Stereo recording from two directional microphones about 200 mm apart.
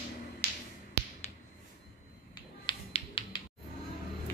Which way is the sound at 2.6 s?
25° left (ahead or behind).